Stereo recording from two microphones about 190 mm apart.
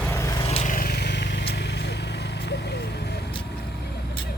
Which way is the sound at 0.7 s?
50° left (ahead or behind).